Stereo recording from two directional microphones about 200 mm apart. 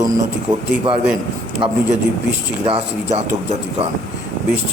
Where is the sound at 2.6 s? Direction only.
30° right (ahead or behind).